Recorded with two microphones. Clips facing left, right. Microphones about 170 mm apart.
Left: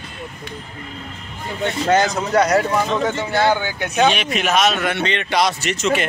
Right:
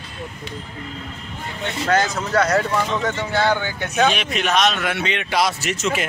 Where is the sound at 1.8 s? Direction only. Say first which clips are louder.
Left 2 dB; 20° left (ahead or behind); by 6.0 s centre (ahead or behind).